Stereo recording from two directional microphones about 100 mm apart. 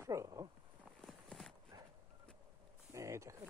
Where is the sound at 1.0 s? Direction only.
5° left (ahead or behind).